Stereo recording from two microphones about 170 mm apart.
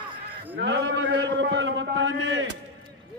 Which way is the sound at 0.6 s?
90° right.